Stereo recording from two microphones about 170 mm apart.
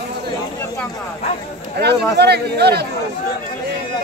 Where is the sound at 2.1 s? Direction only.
75° right (ahead or behind).